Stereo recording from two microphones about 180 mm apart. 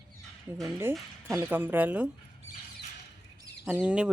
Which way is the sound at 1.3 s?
10° right (ahead or behind).